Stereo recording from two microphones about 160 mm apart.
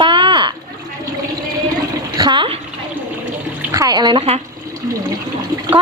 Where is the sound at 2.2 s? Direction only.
30° right (ahead or behind).